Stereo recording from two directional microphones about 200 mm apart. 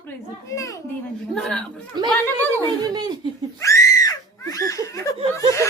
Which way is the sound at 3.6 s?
15° left (ahead or behind).